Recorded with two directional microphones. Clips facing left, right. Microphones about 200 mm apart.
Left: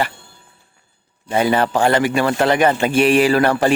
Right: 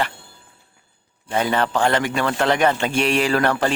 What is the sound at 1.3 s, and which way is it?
A man's voice, 10° left (ahead or behind).